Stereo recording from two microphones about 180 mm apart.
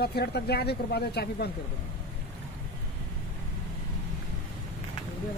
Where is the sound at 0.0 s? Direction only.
65° left (ahead or behind).